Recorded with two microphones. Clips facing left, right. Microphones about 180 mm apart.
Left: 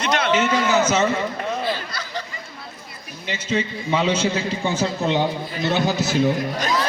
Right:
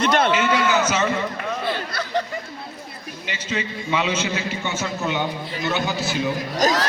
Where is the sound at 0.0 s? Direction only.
55° right (ahead or behind).